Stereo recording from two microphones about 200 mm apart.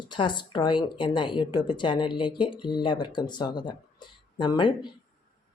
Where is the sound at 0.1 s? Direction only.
25° left (ahead or behind).